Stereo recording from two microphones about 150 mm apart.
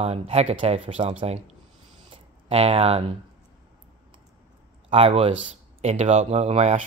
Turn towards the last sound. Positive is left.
turn(degrees=-45)  # may be behind; listen again after turning